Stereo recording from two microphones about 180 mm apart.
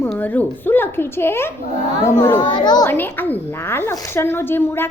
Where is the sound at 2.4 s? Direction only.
25° left (ahead or behind).